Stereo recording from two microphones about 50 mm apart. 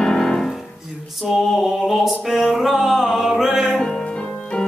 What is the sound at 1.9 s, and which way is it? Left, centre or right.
Music, centre.